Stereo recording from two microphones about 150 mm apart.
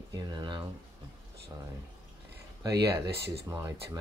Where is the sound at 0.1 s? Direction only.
30° right (ahead or behind).